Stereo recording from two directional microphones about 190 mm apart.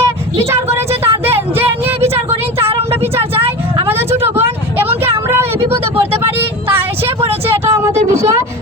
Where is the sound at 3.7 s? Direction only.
15° right (ahead or behind).